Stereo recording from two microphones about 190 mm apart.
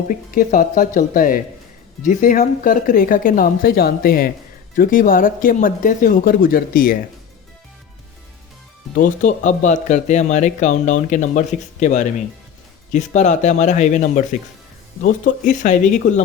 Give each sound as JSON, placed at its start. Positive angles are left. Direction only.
{"t": 0.1, "sound": "speech", "side_deg": 45}
{"t": 9.0, "sound": "speech", "side_deg": 40}